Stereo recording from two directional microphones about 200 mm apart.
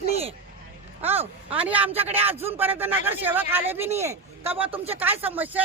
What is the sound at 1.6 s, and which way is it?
Speech, 10° right (ahead or behind).